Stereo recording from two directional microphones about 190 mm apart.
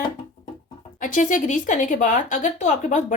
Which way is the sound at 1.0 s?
45° left (ahead or behind).